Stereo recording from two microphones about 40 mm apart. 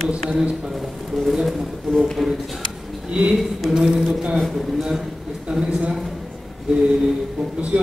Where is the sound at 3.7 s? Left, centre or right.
Right.